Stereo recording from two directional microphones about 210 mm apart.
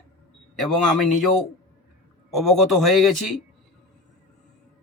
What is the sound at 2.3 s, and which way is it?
A man's voice, centre (ahead or behind).